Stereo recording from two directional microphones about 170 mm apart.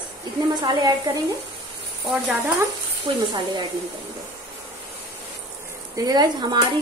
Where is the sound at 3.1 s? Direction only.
25° right (ahead or behind).